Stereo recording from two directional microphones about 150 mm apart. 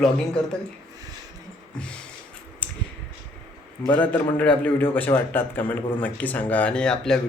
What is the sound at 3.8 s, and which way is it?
A man's voice, 10° left (ahead or behind).